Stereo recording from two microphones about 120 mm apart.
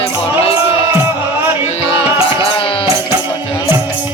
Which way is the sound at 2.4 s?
50° left (ahead or behind).